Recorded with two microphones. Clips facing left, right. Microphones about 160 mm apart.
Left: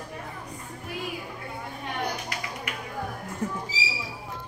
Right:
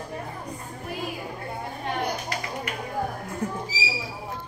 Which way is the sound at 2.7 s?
35° right (ahead or behind).